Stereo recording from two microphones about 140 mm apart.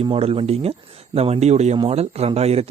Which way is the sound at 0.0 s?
45° right (ahead or behind).